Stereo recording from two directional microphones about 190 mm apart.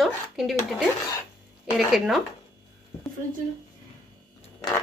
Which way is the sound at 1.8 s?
Centre (ahead or behind).